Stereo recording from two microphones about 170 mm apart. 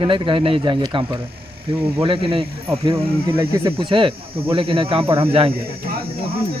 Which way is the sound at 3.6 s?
30° right (ahead or behind).